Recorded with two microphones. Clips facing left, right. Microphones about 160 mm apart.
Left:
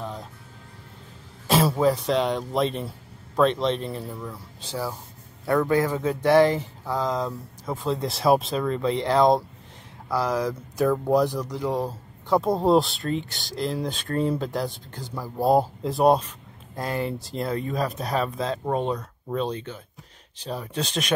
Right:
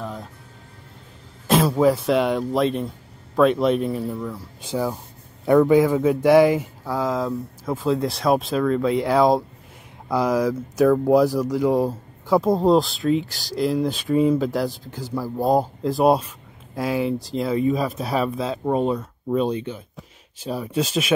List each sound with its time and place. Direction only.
0.0 s music: centre (ahead or behind)
1.5 s throat clearing: centre (ahead or behind)
1.8 s speech: 5° right (ahead or behind)
4.6 s speech: 15° right (ahead or behind)